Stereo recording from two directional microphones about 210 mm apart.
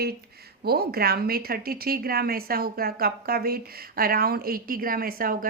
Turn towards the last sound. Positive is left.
turn(degrees=-45)  # may be behind; listen again after turning